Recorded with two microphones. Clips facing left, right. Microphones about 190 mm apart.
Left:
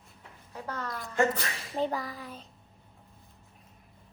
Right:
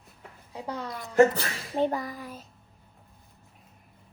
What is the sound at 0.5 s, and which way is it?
A woman's voice, 15° right (ahead or behind).